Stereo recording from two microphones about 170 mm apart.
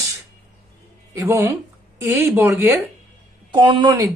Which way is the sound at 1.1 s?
15° right (ahead or behind).